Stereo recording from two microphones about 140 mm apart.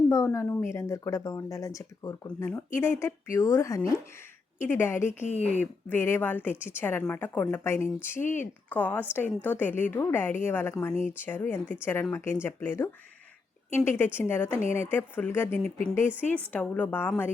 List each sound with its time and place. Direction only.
0.1 s a woman's voice: 20° left (ahead or behind)
5.2 s speech: 50° left (ahead or behind)
5.5 s a woman's voice: 15° left (ahead or behind)